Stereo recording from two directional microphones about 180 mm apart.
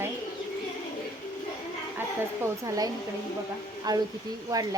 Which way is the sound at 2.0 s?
15° right (ahead or behind).